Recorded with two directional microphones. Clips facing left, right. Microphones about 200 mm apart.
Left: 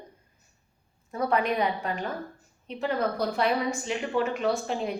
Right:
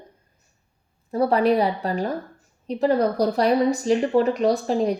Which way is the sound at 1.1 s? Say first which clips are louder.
Right 7 dB; 35° right (ahead or behind).